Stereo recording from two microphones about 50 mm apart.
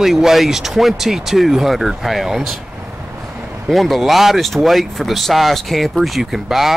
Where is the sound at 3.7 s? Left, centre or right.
Centre.